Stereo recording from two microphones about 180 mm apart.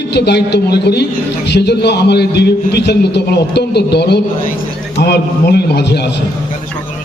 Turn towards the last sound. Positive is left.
turn(degrees=65)  # may be behind; listen again after turning